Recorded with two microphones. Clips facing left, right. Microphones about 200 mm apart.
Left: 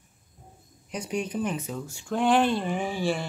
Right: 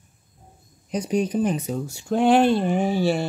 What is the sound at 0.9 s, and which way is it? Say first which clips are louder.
Speech: right 7 dB; 35° right (ahead or behind).